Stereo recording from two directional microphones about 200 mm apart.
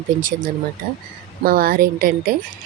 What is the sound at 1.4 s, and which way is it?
Speech, 45° right (ahead or behind).